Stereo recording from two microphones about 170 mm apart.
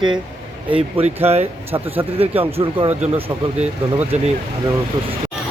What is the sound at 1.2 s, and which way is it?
Speech, 35° right (ahead or behind).